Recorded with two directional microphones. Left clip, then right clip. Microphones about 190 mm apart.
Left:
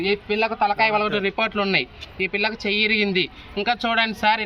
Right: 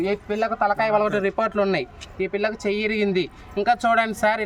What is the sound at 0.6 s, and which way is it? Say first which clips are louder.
A man's voice: even; 20° right (ahead or behind).